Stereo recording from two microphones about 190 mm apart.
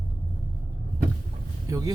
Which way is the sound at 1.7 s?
20° right (ahead or behind).